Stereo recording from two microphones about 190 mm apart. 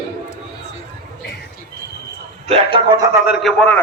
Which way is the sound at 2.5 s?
30° right (ahead or behind).